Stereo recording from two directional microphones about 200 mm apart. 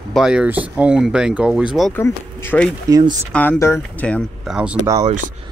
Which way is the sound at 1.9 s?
10° left (ahead or behind).